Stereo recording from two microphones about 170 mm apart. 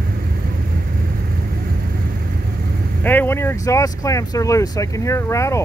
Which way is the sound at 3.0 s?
10° left (ahead or behind).